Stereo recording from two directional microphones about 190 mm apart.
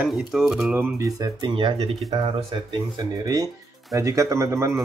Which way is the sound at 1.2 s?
25° right (ahead or behind).